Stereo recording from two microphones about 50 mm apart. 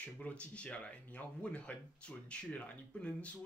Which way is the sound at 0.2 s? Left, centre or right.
Left.